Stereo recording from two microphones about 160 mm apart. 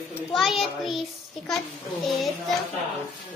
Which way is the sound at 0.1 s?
Centre (ahead or behind).